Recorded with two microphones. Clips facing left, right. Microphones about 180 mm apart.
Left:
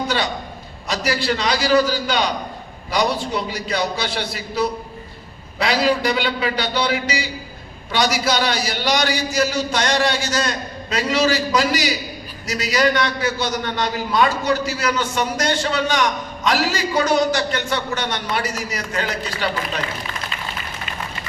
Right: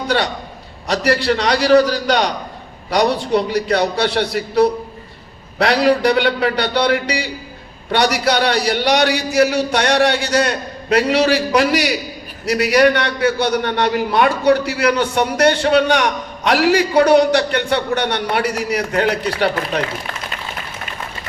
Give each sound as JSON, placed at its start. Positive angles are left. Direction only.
{"t": 0.9, "sound": "a man's voice", "side_deg": -65}